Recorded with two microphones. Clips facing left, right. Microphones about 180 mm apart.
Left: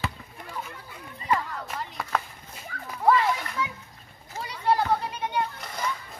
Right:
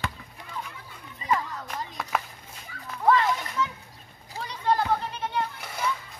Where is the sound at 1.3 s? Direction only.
5° left (ahead or behind).